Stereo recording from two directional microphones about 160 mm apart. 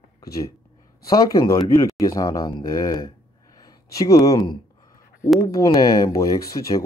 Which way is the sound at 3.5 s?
25° left (ahead or behind).